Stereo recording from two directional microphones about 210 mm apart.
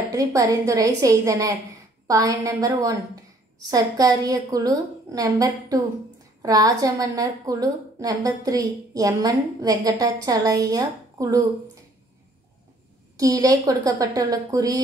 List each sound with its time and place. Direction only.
0.1 s a woman's voice: 15° right (ahead or behind)
13.2 s a woman's voice: 15° right (ahead or behind)